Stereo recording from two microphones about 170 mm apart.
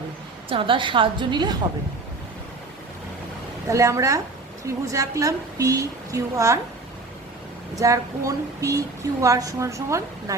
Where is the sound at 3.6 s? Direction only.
15° right (ahead or behind).